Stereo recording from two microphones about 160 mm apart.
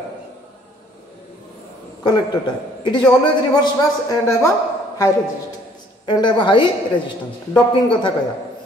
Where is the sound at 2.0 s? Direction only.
25° left (ahead or behind).